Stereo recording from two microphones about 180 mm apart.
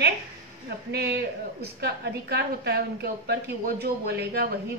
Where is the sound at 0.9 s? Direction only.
65° right (ahead or behind).